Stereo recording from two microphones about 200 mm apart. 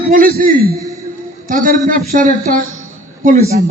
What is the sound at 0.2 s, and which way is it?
A man's voice, 45° right (ahead or behind).